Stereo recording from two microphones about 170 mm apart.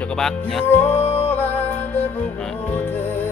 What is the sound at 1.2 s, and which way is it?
Music, 10° left (ahead or behind).